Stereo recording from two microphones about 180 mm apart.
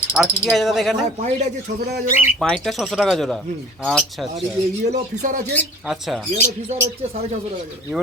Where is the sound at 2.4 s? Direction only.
Centre (ahead or behind).